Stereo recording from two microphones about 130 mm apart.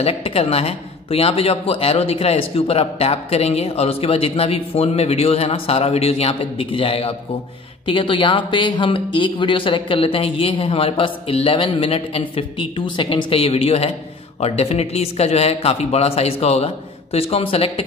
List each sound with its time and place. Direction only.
0.0 s a man's voice: 50° left (ahead or behind)